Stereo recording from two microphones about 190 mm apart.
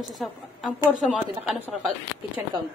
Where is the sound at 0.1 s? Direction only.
Centre (ahead or behind).